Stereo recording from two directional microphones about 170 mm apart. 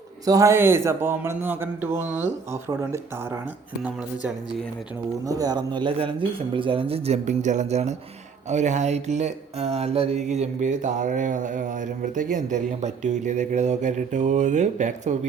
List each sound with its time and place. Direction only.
0.3 s a man's voice: 20° right (ahead or behind)
5.2 s speech: 20° right (ahead or behind); by 7.9 s 40° right (ahead or behind)
8.4 s mantra: 45° right (ahead or behind)